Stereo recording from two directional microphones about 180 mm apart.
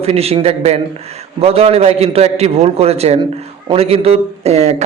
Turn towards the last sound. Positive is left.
turn(degrees=-35)  # may be behind; listen again after turning